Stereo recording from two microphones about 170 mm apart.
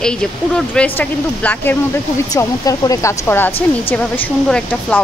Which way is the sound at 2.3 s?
20° left (ahead or behind).